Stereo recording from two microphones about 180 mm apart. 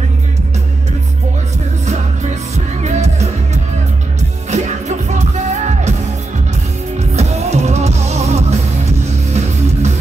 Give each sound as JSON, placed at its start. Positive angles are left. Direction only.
{"t": 1.9, "sound": "music", "side_deg": -40}
{"t": 4.5, "sound": "music", "side_deg": -40}
{"t": 7.0, "sound": "music", "side_deg": -35}